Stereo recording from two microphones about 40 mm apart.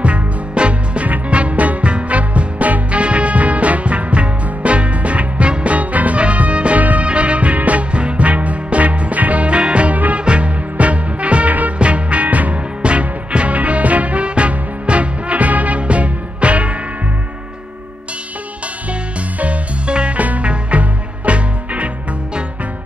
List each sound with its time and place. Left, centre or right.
0.0 s music: right
19.4 s music: right